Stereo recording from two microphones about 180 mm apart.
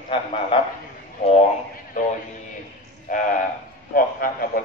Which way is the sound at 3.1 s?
45° left (ahead or behind).